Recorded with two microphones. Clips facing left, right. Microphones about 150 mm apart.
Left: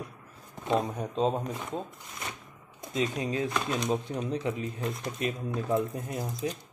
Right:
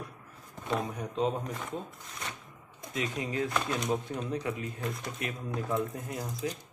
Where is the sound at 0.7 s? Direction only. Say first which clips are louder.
Left 5 dB; 30° left (ahead or behind).